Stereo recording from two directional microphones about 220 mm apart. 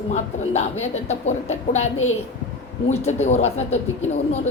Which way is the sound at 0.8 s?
30° left (ahead or behind).